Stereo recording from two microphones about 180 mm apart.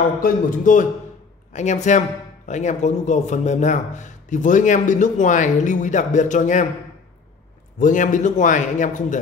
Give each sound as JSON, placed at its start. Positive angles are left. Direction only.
{"t": 0.2, "sound": "speech", "side_deg": 45}
{"t": 7.8, "sound": "speech", "side_deg": 45}